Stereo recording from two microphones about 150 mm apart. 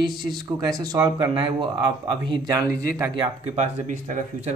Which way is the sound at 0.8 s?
25° right (ahead or behind).